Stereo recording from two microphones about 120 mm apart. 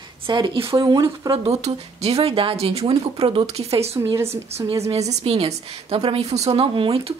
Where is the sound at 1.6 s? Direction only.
60° right (ahead or behind).